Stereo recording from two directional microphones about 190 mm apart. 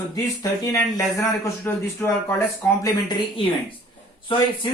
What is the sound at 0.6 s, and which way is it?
Speech, 15° left (ahead or behind).